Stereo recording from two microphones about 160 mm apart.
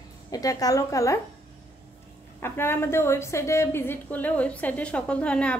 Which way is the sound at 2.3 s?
15° left (ahead or behind).